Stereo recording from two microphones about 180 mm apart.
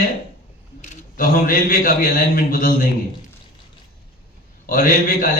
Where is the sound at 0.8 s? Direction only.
50° left (ahead or behind).